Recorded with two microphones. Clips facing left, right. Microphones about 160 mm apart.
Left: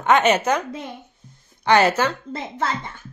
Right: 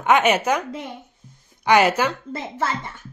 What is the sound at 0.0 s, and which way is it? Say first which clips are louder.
A woman's voice: left 1 dB; 10° right (ahead or behind).